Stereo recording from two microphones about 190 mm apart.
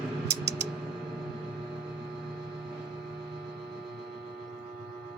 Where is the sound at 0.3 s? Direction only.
65° right (ahead or behind).